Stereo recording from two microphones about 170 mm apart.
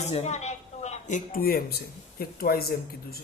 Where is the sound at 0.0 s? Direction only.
40° left (ahead or behind).